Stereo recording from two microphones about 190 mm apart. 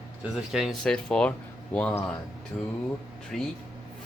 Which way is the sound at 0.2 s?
Centre (ahead or behind).